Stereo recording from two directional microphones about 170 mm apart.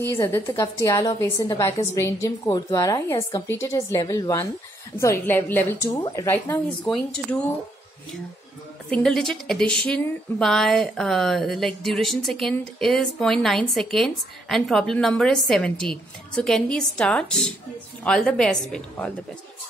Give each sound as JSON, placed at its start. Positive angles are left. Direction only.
{"t": 0.2, "sound": "a woman's voice", "side_deg": 15}
{"t": 8.9, "sound": "speech", "side_deg": 5}